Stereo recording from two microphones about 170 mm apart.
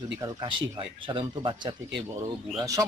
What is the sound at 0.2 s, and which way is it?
Speech, 20° right (ahead or behind).